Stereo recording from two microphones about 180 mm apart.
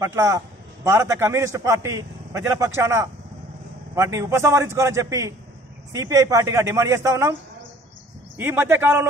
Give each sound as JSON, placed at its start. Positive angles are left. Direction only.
{"t": 0.0, "sound": "a man's voice", "side_deg": -15}
{"t": 8.4, "sound": "a man's voice", "side_deg": -10}